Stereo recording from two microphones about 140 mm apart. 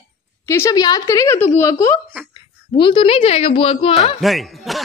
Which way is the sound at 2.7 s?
35° left (ahead or behind).